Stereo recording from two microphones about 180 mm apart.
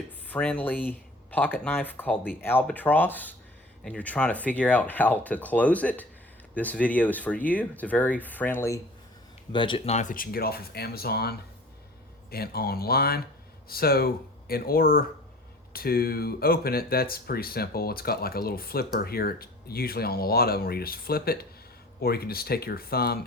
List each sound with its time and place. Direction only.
0.3 s speech: 5° left (ahead or behind)
9.5 s speech: 25° left (ahead or behind); by 23.2 s 60° left (ahead or behind)